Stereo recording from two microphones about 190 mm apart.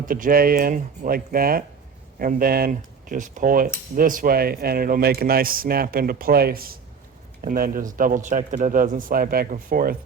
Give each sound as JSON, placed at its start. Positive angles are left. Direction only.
{"t": 0.0, "sound": "speech", "side_deg": -45}